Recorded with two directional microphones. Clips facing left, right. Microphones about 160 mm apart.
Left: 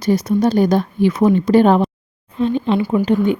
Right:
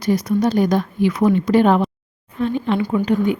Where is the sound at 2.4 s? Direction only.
20° left (ahead or behind).